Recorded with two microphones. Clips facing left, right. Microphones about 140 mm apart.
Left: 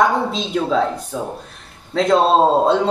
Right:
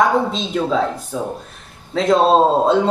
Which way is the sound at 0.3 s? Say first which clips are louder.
Even; centre (ahead or behind).